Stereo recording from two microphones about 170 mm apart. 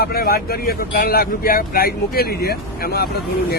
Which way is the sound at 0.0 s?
60° left (ahead or behind).